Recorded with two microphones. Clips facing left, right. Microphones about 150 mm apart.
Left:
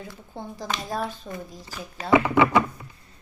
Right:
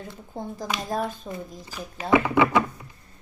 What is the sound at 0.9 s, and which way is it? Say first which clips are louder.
Speech: right 2 dB; 45° right (ahead or behind).